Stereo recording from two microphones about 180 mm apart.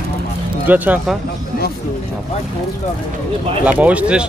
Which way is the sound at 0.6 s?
10° right (ahead or behind).